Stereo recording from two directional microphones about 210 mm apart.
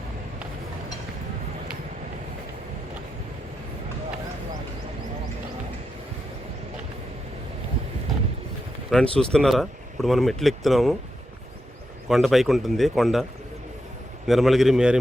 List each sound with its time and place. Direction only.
8.9 s speech: centre (ahead or behind)
12.0 s speech: centre (ahead or behind)
14.3 s speech: centre (ahead or behind)